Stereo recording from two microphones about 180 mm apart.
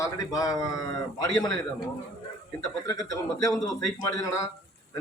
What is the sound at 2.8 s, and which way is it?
Speech, 20° left (ahead or behind).